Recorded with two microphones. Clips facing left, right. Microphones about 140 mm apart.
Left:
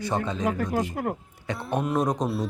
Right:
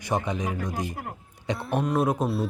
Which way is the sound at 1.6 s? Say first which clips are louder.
Even; centre (ahead or behind).